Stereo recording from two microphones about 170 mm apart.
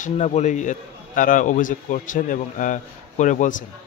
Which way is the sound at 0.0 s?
45° left (ahead or behind).